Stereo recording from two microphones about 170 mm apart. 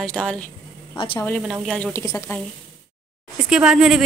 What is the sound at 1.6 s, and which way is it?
Speech, 5° left (ahead or behind).